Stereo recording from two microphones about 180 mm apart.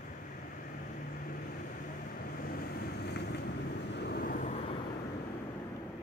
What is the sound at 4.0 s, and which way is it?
Vehicle, 65° left (ahead or behind).